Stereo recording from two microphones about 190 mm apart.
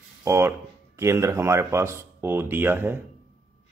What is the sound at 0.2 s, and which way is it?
Speech, 15° right (ahead or behind).